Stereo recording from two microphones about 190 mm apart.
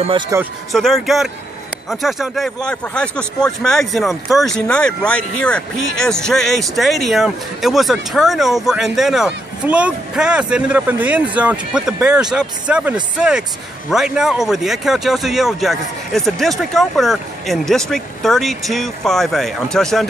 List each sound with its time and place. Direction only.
0.3 s speech: 15° right (ahead or behind)
0.7 s speech: centre (ahead or behind)